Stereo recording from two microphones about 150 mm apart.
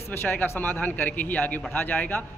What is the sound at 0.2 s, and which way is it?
A man's voice, 15° left (ahead or behind).